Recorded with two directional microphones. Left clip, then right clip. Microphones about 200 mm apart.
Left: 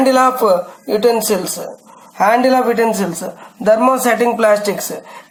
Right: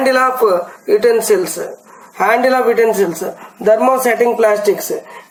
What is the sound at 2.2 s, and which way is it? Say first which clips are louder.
A man's voice: even; 15° right (ahead or behind).